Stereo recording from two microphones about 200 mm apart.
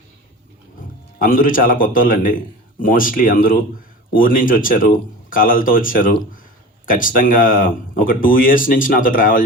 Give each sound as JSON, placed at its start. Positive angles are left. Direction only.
{"t": 1.2, "sound": "speech", "side_deg": 45}